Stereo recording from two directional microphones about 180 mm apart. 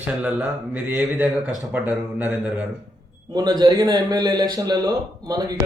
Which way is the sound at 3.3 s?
25° right (ahead or behind).